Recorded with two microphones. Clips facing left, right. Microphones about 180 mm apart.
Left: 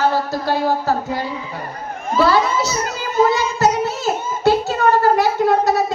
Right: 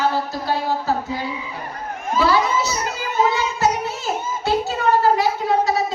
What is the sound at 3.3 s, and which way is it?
Child singing, 40° left (ahead or behind).